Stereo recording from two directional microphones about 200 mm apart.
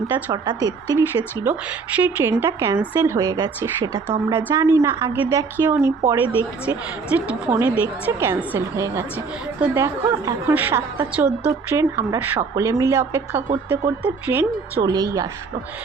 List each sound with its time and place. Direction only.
0.3 s speech: 20° right (ahead or behind)